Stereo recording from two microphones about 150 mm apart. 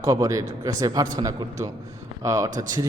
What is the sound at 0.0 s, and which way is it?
A man's voice, 25° right (ahead or behind).